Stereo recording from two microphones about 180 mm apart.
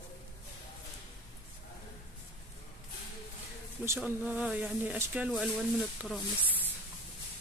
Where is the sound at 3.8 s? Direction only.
10° right (ahead or behind).